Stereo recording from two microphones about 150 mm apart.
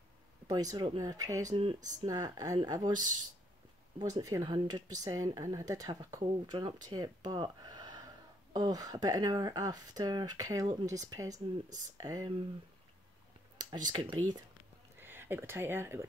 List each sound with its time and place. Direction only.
0.5 s speech: 25° right (ahead or behind)
4.0 s speech: 25° right (ahead or behind)
13.6 s a sound: 25° right (ahead or behind)
13.9 s speech: 25° right (ahead or behind)
15.0 s speech: 15° right (ahead or behind)